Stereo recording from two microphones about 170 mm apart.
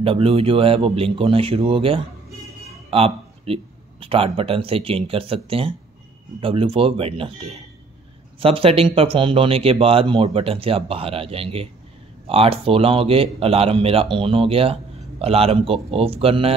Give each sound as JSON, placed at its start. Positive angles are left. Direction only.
{"t": 0.0, "sound": "speech", "side_deg": -35}